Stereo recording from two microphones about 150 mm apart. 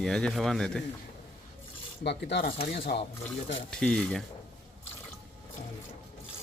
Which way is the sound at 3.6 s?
5° left (ahead or behind).